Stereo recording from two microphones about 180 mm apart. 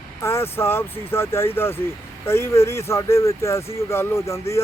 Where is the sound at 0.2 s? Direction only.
15° left (ahead or behind).